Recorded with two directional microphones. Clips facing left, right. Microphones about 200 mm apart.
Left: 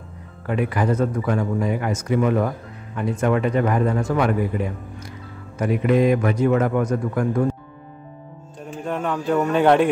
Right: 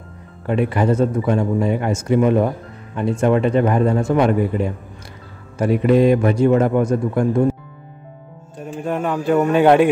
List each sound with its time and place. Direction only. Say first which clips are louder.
0.5 s speech: right 4 dB; 25° right (ahead or behind)
8.8 s speech: right 4 dB; 10° right (ahead or behind)